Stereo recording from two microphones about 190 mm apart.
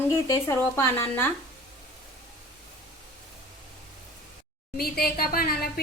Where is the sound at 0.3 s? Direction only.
15° left (ahead or behind).